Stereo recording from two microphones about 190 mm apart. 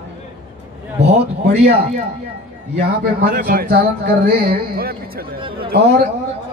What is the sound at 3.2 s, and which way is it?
Speech, 50° right (ahead or behind).